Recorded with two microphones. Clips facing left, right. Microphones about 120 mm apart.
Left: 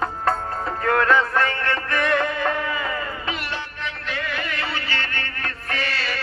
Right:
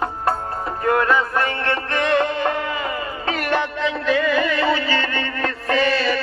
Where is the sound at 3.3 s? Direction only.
50° right (ahead or behind).